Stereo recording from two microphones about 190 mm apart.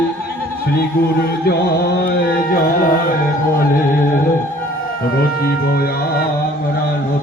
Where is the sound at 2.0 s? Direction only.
50° left (ahead or behind).